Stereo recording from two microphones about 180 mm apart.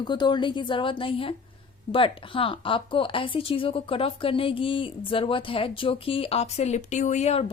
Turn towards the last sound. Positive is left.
turn(degrees=35)  # may be behind; listen again after turning